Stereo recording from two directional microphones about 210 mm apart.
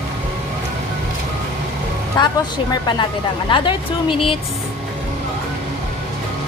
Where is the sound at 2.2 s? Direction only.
20° left (ahead or behind).